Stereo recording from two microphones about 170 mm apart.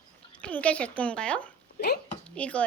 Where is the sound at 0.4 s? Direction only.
5° left (ahead or behind).